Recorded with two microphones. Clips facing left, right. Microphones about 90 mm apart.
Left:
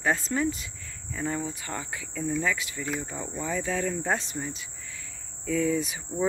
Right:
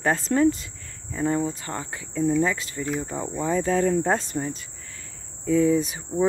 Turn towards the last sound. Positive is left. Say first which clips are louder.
# right 6 dB
turn(degrees=-30)  # may be behind; listen again after turning